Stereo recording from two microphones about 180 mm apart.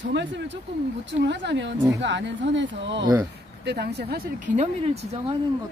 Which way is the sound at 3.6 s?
65° right (ahead or behind).